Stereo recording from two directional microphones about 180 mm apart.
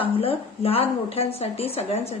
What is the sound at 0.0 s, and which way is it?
A woman's voice, 30° left (ahead or behind).